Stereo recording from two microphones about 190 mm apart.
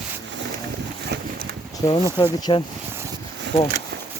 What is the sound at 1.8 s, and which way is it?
Speech, 15° left (ahead or behind).